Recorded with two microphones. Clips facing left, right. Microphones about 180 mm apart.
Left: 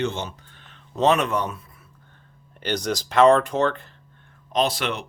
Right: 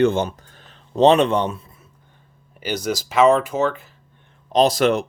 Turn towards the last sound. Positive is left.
turn(degrees=-45)  # may be behind; listen again after turning